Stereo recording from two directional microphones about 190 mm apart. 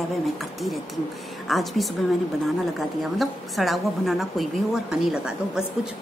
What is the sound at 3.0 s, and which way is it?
A woman's voice, centre (ahead or behind).